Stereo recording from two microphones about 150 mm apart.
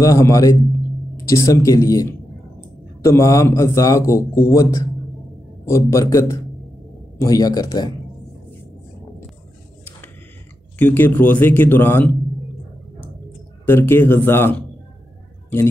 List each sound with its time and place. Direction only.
0.0 s a man's voice: 20° left (ahead or behind)
10.8 s speech: 15° left (ahead or behind)
13.7 s speech: 15° left (ahead or behind)